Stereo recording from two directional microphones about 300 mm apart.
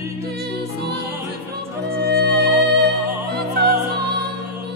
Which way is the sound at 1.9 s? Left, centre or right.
Right.